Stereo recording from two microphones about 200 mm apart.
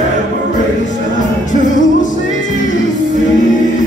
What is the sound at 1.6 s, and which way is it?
Music, 40° left (ahead or behind).